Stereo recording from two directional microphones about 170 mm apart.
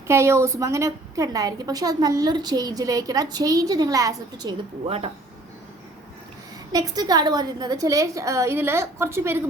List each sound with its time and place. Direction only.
0.1 s a woman's voice: 15° right (ahead or behind); by 5.1 s 35° right (ahead or behind)
6.7 s a woman's voice: 20° right (ahead or behind)